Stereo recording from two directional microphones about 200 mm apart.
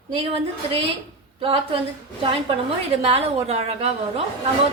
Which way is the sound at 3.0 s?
30° right (ahead or behind).